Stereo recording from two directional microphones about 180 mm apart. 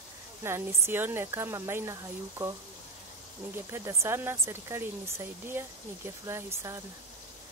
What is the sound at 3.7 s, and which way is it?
Speech, 15° right (ahead or behind).